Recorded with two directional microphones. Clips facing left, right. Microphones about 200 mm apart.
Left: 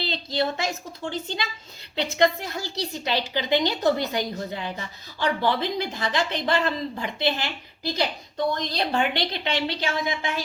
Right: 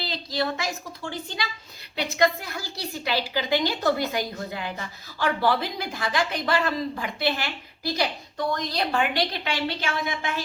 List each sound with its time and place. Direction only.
0.0 s a woman's voice: 25° left (ahead or behind)
8.7 s a woman's voice: 25° left (ahead or behind)